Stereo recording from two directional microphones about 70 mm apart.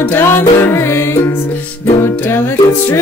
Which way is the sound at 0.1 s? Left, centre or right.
Left.